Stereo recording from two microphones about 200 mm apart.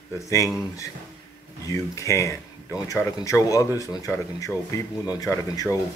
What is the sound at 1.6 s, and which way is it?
Speech, 15° left (ahead or behind).